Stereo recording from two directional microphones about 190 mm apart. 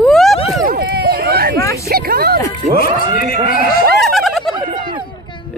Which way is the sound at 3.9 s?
Centre (ahead or behind).